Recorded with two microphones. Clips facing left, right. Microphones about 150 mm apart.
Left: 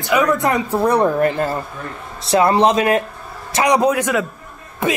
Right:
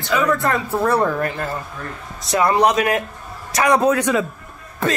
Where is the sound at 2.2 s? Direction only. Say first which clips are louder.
Left 3 dB; 30° left (ahead or behind); by 4.2 s 10° left (ahead or behind).